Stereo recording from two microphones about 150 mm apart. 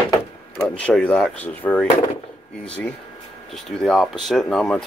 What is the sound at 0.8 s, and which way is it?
Speech, 5° left (ahead or behind).